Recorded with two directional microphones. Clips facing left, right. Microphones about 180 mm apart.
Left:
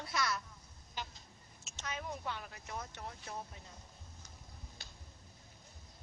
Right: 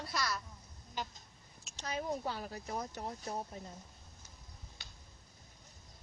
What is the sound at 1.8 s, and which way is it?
Speech, 35° right (ahead or behind).